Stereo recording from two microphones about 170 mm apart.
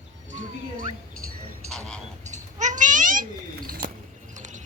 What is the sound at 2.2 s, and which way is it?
Cat, 45° right (ahead or behind).